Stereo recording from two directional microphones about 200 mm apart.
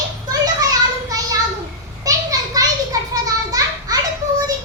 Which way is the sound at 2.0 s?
20° right (ahead or behind).